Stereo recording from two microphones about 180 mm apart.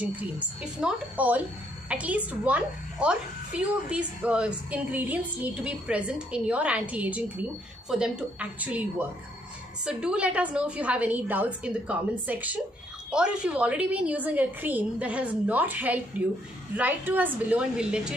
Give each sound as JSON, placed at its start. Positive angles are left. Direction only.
{"t": 0.0, "sound": "a woman's voice", "side_deg": -10}